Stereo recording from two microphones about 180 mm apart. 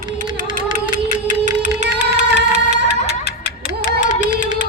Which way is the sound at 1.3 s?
45° right (ahead or behind).